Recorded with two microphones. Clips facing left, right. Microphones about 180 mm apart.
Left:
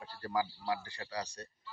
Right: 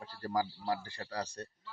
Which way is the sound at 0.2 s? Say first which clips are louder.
Right 1 dB; 40° right (ahead or behind).